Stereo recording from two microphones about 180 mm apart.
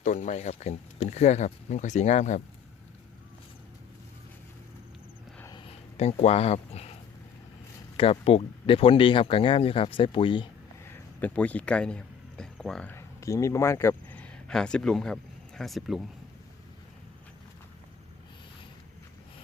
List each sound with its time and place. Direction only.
0.0 s speech: 40° left (ahead or behind)
5.4 s a sound: 25° left (ahead or behind)
7.9 s speech: 30° left (ahead or behind)
10.8 s speech: 10° left (ahead or behind)